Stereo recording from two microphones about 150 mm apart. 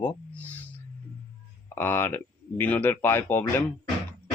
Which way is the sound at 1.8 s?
15° left (ahead or behind).